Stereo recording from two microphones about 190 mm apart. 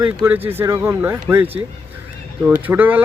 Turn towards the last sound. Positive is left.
turn(degrees=-10)  # may be behind; listen again after turning